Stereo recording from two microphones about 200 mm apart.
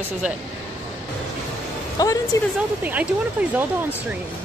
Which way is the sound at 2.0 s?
20° left (ahead or behind).